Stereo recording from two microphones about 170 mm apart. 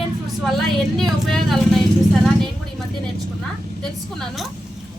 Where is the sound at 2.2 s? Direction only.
5° left (ahead or behind).